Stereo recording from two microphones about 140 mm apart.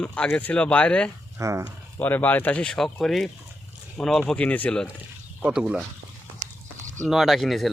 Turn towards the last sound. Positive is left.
turn(degrees=0)  # may be behind; listen again after turning